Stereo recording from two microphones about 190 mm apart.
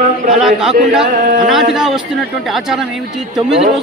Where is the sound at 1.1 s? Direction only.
45° right (ahead or behind).